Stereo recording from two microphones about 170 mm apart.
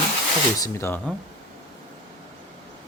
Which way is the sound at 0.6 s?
15° left (ahead or behind).